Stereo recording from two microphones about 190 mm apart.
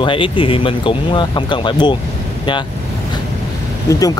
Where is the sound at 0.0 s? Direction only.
25° left (ahead or behind).